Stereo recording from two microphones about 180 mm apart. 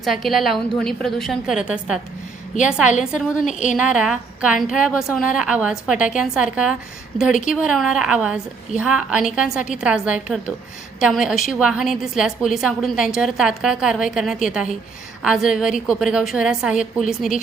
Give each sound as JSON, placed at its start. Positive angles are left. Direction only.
{"t": 0.0, "sound": "a woman's voice", "side_deg": 0}
{"t": 3.4, "sound": "a woman's voice", "side_deg": 45}
{"t": 3.8, "sound": "a woman's voice", "side_deg": -5}